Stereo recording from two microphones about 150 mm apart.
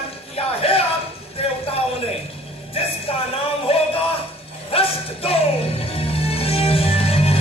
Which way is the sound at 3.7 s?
40° left (ahead or behind).